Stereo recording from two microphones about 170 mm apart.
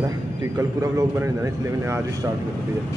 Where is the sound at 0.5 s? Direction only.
20° right (ahead or behind).